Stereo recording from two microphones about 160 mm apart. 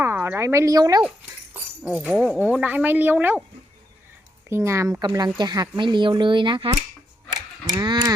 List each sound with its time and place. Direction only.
0.0 s a woman's voice: 15° right (ahead or behind)
1.8 s speech: 5° right (ahead or behind)
4.4 s speech: 15° right (ahead or behind)
7.7 s sheep: 25° right (ahead or behind)